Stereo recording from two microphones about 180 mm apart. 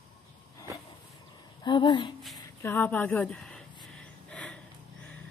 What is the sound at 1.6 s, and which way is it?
Speech, 25° left (ahead or behind).